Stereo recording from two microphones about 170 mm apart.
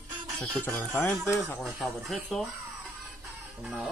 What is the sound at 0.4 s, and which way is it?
Speech, 5° left (ahead or behind).